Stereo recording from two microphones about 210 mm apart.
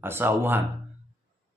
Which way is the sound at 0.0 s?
10° right (ahead or behind).